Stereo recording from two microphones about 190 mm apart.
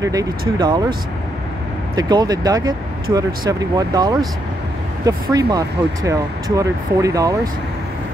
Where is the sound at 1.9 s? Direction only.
20° right (ahead or behind).